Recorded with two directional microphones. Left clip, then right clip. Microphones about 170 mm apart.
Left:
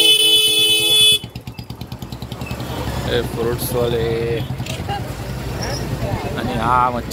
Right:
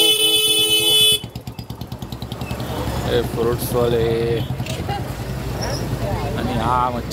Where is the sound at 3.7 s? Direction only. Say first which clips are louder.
Right 1 dB; 25° right (ahead or behind).